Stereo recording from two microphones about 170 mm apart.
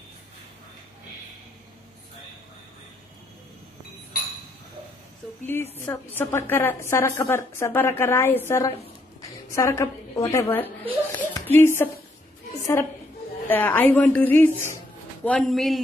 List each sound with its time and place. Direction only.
5.5 s a woman's voice: 10° left (ahead or behind)
13.5 s a woman's voice: 10° left (ahead or behind)